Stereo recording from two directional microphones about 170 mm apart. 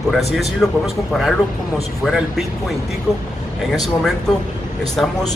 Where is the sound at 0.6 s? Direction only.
Centre (ahead or behind).